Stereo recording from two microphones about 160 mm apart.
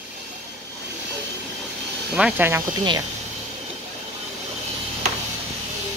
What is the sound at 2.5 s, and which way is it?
Speech, 20° right (ahead or behind).